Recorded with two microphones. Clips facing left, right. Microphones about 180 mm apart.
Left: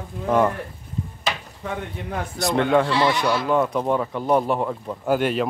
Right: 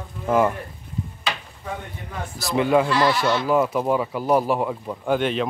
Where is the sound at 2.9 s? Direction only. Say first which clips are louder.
Even; 20° left (ahead or behind).